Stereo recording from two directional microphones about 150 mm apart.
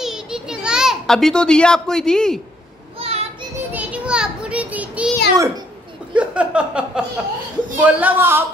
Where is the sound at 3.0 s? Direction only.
45° right (ahead or behind).